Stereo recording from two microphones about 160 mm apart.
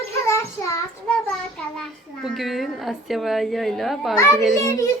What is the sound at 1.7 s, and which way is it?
A woman's voice, centre (ahead or behind).